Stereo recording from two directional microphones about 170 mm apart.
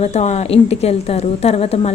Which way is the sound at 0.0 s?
40° left (ahead or behind).